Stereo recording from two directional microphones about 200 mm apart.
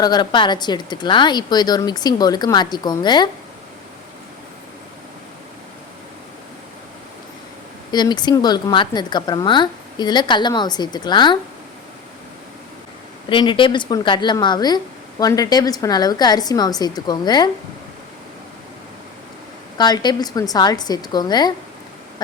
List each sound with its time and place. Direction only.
0.0 s speech: 20° left (ahead or behind)
7.9 s speech: 20° left (ahead or behind)
13.3 s speech: 25° left (ahead or behind)
19.7 s speech: 20° left (ahead or behind)